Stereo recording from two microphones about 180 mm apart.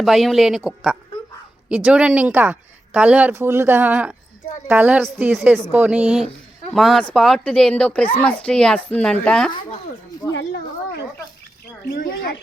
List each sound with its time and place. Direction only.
0.0 s speech: centre (ahead or behind)
10.3 s speech: 80° left
11.9 s speech: 55° left (ahead or behind)